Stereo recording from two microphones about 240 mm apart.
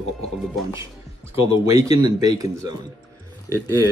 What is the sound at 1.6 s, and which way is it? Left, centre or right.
Speech, centre.